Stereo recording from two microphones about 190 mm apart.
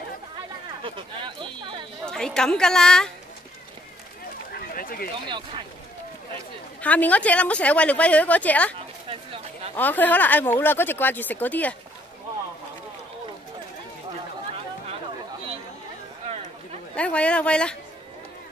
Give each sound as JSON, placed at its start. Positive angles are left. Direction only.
{"t": 0.8, "sound": "speech", "side_deg": -25}
{"t": 1.6, "sound": "a sound", "side_deg": -25}
{"t": 2.0, "sound": "a woman's voice", "side_deg": 5}
{"t": 4.5, "sound": "a sound", "side_deg": 55}
{"t": 5.3, "sound": "speech", "side_deg": -25}
{"t": 6.8, "sound": "a woman's voice", "side_deg": 10}
{"t": 9.1, "sound": "a sound", "side_deg": -30}
{"t": 9.8, "sound": "a woman's voice", "side_deg": 10}
{"t": 16.9, "sound": "a woman's voice", "side_deg": 5}